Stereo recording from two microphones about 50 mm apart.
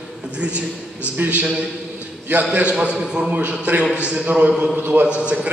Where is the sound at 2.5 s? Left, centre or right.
Right.